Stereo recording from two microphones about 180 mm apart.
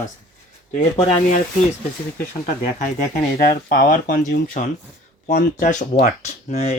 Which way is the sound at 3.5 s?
50° left (ahead or behind).